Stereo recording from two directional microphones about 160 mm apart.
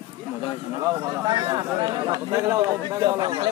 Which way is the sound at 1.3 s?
30° right (ahead or behind).